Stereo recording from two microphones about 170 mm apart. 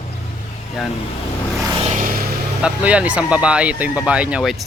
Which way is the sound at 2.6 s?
5° right (ahead or behind).